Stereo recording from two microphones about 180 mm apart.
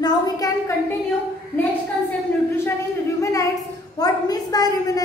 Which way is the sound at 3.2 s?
15° left (ahead or behind).